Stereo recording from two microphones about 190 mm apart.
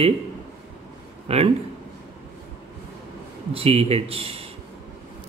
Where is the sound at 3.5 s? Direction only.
30° right (ahead or behind).